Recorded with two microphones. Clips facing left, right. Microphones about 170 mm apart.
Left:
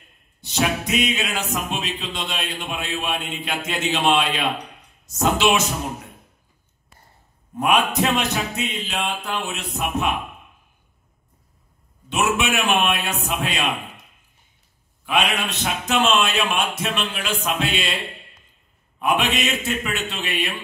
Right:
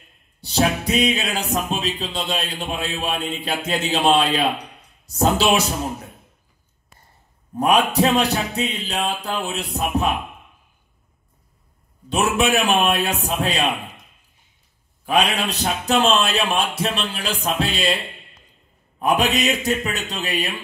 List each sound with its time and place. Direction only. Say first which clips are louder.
0.4 s music: right 3 dB; 35° right (ahead or behind)
7.5 s music: right 2 dB; 35° right (ahead or behind)
12.1 s music: right 3 dB; 35° right (ahead or behind)
15.0 s music: right 2 dB; 35° right (ahead or behind)